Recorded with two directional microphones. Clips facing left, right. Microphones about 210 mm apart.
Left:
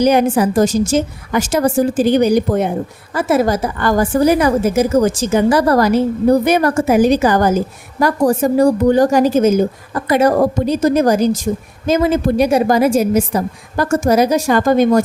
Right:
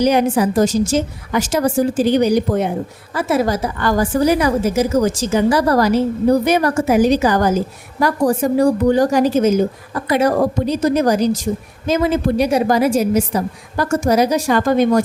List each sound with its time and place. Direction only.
0.0 s a woman's voice: 50° left (ahead or behind)